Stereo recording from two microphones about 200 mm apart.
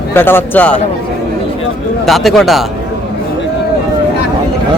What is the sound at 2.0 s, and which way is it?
Speech, centre (ahead or behind).